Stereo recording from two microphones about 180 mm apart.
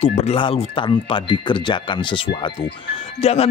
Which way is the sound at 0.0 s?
35° left (ahead or behind).